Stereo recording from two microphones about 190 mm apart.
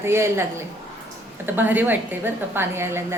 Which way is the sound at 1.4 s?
10° right (ahead or behind).